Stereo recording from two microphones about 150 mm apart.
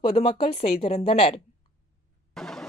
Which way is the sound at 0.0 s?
35° left (ahead or behind).